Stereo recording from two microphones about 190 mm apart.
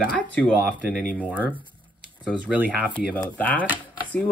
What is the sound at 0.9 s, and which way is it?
Speech, 60° right (ahead or behind).